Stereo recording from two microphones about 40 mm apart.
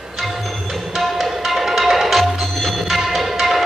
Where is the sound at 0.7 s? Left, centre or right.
Centre.